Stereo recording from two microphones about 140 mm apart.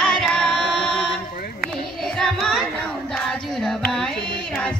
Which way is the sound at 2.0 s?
5° left (ahead or behind).